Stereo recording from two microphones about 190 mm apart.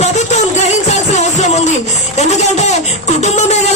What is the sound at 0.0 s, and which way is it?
Music, 35° left (ahead or behind).